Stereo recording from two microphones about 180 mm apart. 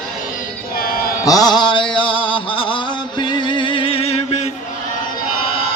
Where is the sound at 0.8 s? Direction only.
55° left (ahead or behind).